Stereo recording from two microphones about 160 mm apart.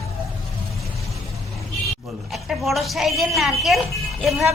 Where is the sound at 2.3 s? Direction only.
Centre (ahead or behind).